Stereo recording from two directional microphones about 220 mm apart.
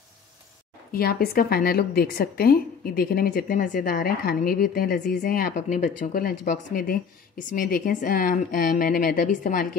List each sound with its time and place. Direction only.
0.9 s a woman's voice: 45° left (ahead or behind)